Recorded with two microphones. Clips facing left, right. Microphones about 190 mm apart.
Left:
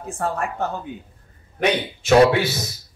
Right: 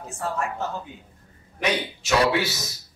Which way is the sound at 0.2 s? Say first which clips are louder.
Left 3 dB; 55° left (ahead or behind).